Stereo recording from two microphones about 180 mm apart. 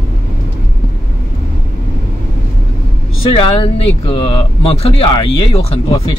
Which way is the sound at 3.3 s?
30° left (ahead or behind).